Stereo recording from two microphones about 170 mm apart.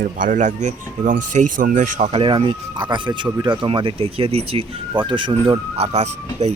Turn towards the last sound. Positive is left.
turn(degrees=-40)  # may be behind; listen again after turning